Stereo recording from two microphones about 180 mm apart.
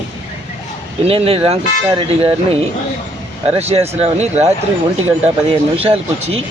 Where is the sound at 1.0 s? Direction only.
30° right (ahead or behind).